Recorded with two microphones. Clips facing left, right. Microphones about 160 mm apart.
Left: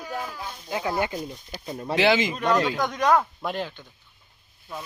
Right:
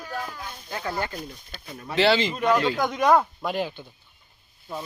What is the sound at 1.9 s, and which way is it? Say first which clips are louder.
Speech: even; 15° left (ahead or behind).